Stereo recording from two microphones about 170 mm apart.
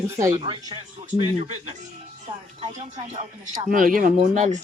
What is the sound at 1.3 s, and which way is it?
Speech, 35° right (ahead or behind).